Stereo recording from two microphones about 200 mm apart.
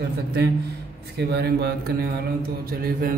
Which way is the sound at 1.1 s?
55° right (ahead or behind).